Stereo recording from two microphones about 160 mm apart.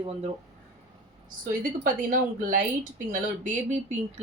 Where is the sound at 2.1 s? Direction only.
55° right (ahead or behind).